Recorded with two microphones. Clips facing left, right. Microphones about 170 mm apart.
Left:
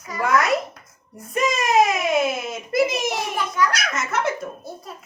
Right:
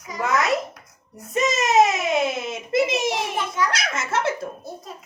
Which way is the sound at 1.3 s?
25° right (ahead or behind).